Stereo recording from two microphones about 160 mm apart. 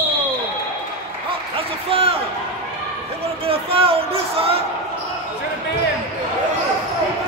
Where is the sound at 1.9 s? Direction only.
35° right (ahead or behind).